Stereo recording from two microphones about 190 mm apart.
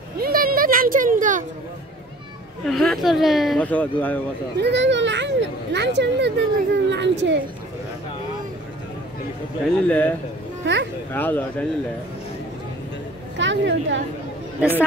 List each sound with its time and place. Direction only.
0.2 s speech: 50° right (ahead or behind)
2.6 s speech: centre (ahead or behind)
4.6 s speech: 65° right (ahead or behind)
9.8 s speech: 10° left (ahead or behind)
10.6 s a child's voice: 70° right (ahead or behind)
11.1 s speech: 10° left (ahead or behind)
13.4 s speech: 75° right (ahead or behind)